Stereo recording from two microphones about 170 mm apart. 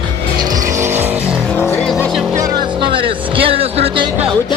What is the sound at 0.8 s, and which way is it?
Vehicle, 15° right (ahead or behind).